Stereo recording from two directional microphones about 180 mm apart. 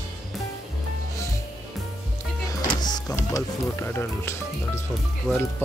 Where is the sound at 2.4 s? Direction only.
20° left (ahead or behind).